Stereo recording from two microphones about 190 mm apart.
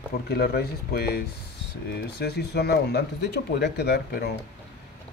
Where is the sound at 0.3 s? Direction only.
55° left (ahead or behind).